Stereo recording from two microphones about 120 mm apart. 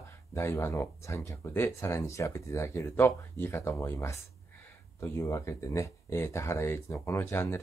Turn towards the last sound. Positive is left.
turn(degrees=20)  # may be behind; listen again after turning